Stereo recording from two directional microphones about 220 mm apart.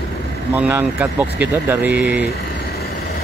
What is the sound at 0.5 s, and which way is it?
Speech, 10° right (ahead or behind).